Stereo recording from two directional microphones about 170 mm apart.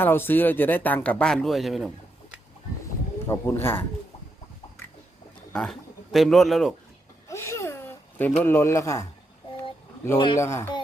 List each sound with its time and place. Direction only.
0.0 s speech: 10° left (ahead or behind)
3.2 s speech: 15° left (ahead or behind)
5.5 s speech: centre (ahead or behind)
7.3 s a sound: 15° left (ahead or behind)
10.3 s speech: 15° left (ahead or behind)